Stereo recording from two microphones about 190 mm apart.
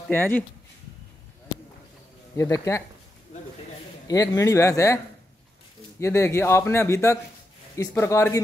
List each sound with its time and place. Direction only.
0.1 s speech: 10° left (ahead or behind)
2.3 s speech: 15° left (ahead or behind)
4.1 s speech: 15° left (ahead or behind)